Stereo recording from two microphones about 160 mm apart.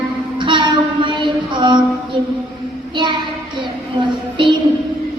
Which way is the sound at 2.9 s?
30° right (ahead or behind).